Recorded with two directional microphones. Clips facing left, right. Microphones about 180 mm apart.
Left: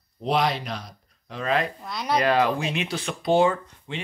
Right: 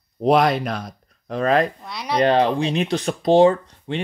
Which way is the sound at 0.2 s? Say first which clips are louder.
Right 7 dB; 50° right (ahead or behind).